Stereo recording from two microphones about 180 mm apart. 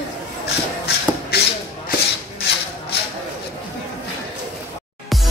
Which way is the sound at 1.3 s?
60° left (ahead or behind).